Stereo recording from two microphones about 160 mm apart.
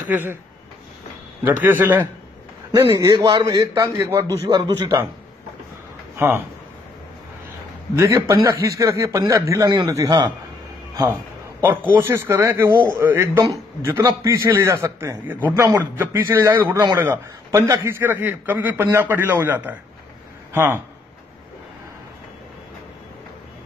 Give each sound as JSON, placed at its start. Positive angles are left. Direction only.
{"t": 0.1, "sound": "a man's voice", "side_deg": -10}
{"t": 1.4, "sound": "a man's voice", "side_deg": -10}
{"t": 6.1, "sound": "speech", "side_deg": -15}
{"t": 7.9, "sound": "a man's voice", "side_deg": -20}
{"t": 11.6, "sound": "a man's voice", "side_deg": -10}